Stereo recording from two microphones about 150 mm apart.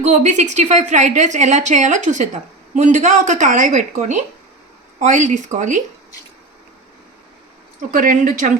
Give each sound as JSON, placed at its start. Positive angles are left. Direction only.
{"t": 0.0, "sound": "a woman's voice", "side_deg": -50}
{"t": 7.8, "sound": "speech", "side_deg": -65}